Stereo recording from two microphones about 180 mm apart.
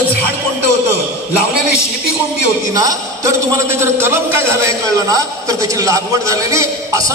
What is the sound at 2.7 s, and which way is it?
A man's voice, 20° right (ahead or behind).